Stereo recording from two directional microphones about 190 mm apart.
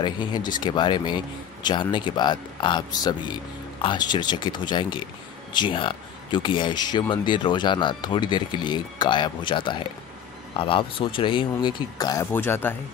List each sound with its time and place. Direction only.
0.0 s speech: 25° left (ahead or behind)